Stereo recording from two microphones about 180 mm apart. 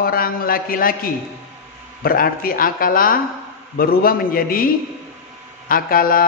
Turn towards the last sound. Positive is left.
turn(degrees=55)  # may be behind; listen again after turning